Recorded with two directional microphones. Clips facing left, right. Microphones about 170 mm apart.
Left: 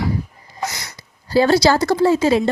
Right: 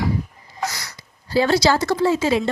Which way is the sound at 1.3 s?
40° left (ahead or behind).